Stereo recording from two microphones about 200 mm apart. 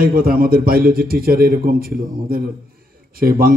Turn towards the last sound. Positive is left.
turn(degrees=-45)  # may be behind; listen again after turning